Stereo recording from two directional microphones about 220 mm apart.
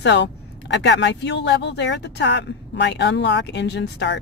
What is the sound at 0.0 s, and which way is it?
Speech, 55° left (ahead or behind).